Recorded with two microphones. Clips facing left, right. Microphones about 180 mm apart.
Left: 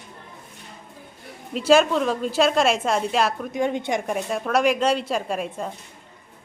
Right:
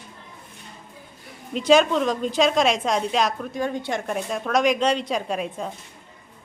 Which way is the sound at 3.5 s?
20° left (ahead or behind).